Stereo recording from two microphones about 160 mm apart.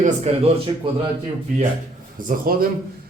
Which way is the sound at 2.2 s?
55° right (ahead or behind).